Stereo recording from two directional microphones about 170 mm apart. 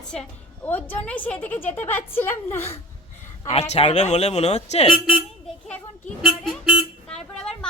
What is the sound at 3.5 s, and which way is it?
Speech, 40° left (ahead or behind).